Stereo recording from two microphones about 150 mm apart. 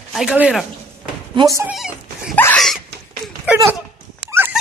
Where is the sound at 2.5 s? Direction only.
Centre (ahead or behind).